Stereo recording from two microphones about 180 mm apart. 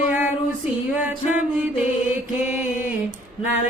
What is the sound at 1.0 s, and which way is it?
Music, 10° right (ahead or behind).